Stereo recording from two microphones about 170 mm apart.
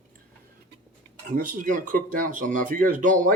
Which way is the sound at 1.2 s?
55° right (ahead or behind).